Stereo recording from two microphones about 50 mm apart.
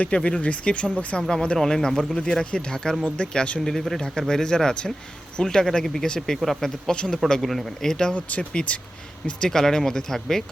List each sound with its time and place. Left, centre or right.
0.0 s speech: left; by 2.2 s centre
2.2 s speech: centre
3.6 s speech: centre
6.9 s speech: centre
7.3 s speech: centre
8.1 s speech: left
9.5 s speech: centre